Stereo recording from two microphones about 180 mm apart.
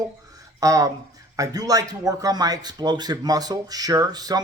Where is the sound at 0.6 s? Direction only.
20° right (ahead or behind).